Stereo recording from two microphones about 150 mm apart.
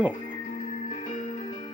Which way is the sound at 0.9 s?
40° left (ahead or behind).